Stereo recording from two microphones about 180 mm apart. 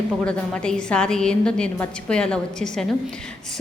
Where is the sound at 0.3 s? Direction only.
5° left (ahead or behind).